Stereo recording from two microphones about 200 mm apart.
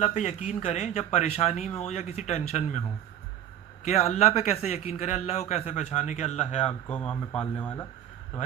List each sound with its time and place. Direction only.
0.0 s a man's voice: 35° left (ahead or behind)
3.8 s a man's voice: 35° left (ahead or behind)
6.8 s speech: 5° left (ahead or behind)